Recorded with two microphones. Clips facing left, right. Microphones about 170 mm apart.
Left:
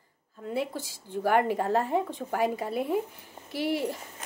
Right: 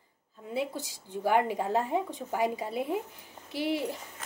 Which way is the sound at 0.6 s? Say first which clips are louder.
Even; 15° right (ahead or behind).